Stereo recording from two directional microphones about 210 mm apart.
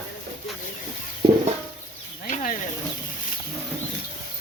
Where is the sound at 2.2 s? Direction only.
40° left (ahead or behind).